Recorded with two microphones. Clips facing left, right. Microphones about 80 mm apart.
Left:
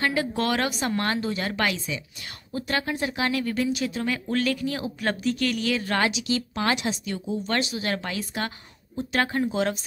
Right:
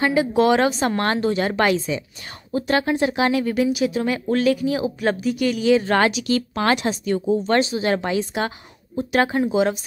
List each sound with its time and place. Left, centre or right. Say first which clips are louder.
0.0 s speech: right 8 dB; centre
0.8 s speech: right 6 dB; right
1.3 s speech: right 8 dB; right
3.7 s speech: right 6 dB; centre
5.9 s speech: right 6 dB; right
7.4 s speech: right 8 dB; right; by 9.8 s centre